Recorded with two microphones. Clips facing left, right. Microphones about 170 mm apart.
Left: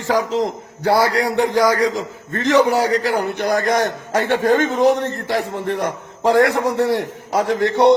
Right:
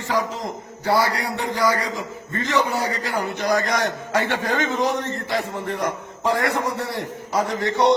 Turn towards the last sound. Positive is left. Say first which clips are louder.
# left 5 dB
turn(degrees=75)  # may be behind; listen again after turning